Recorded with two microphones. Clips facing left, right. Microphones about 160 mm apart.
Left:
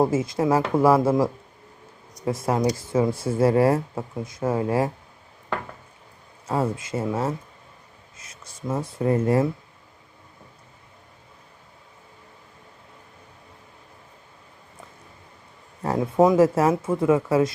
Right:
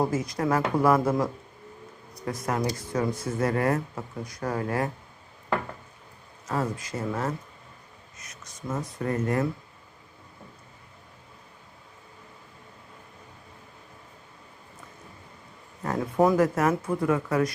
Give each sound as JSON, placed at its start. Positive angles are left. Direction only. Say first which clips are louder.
{"t": 0.0, "sound": "speech", "louder": "left 5 dB", "side_deg": 25}
{"t": 6.5, "sound": "speech", "louder": "left 4 dB", "side_deg": 25}
{"t": 16.0, "sound": "speech", "louder": "left 4 dB", "side_deg": 20}